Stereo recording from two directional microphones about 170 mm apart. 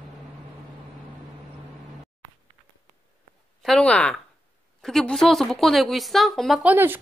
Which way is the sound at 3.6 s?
5° left (ahead or behind).